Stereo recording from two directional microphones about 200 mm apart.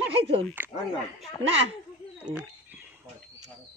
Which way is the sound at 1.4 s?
30° right (ahead or behind).